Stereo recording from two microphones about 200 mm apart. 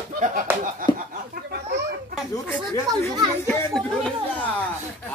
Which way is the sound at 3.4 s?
5° left (ahead or behind).